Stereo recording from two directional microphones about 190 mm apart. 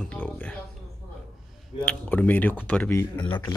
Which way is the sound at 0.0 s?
5° left (ahead or behind).